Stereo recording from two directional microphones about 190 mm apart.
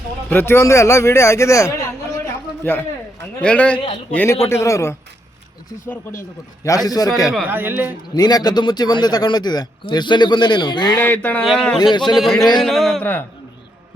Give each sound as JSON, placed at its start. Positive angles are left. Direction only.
{"t": 0.3, "sound": "a man's voice", "side_deg": 10}
{"t": 7.4, "sound": "speech", "side_deg": -10}
{"t": 8.1, "sound": "a man's voice", "side_deg": 20}
{"t": 11.0, "sound": "a man's voice", "side_deg": 10}
{"t": 11.8, "sound": "a man's voice", "side_deg": 25}
{"t": 12.1, "sound": "a man's voice", "side_deg": 0}